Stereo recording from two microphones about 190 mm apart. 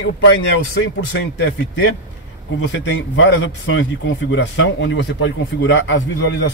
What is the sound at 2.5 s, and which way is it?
A man's voice, 80° left.